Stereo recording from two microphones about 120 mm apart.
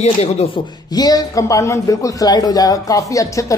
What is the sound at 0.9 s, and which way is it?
Speech, 30° left (ahead or behind).